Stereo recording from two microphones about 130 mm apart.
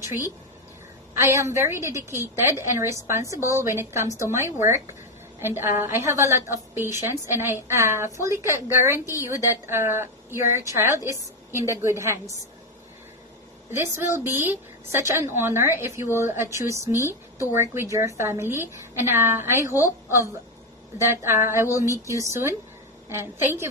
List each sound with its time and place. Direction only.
1.2 s a woman's voice: 20° right (ahead or behind)
13.7 s a woman's voice: 20° right (ahead or behind)
21.0 s a woman's voice: 20° right (ahead or behind)
21.6 s a sound: 25° left (ahead or behind)
22.0 s a woman's voice: 25° right (ahead or behind)